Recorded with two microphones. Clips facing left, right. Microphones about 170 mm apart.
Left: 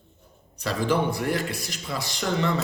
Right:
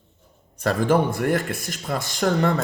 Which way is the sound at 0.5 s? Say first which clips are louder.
Right 5 dB; 50° right (ahead or behind).